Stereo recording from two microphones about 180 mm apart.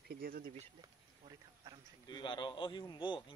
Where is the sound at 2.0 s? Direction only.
25° left (ahead or behind).